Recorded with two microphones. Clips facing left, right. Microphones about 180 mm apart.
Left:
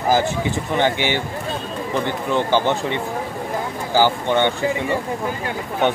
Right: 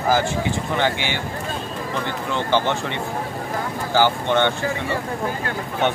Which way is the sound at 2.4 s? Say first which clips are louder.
Left 2 dB; 15° left (ahead or behind).